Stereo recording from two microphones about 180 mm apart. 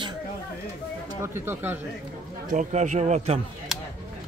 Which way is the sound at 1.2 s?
15° right (ahead or behind).